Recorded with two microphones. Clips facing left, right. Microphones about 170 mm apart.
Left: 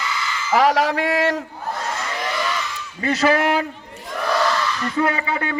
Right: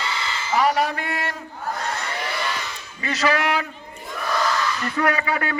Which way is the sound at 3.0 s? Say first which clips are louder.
Left 4 dB; 50° left (ahead or behind).